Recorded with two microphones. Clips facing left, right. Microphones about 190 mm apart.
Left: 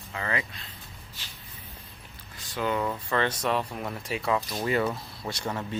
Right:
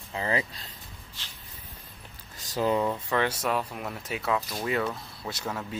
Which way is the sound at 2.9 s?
10° right (ahead or behind).